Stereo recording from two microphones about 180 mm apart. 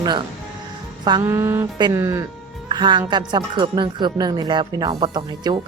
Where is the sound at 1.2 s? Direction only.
15° right (ahead or behind).